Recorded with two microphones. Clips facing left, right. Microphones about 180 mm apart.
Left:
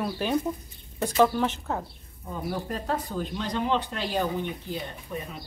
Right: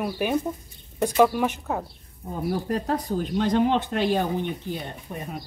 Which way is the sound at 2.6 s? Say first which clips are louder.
Right 5 dB; 40° right (ahead or behind).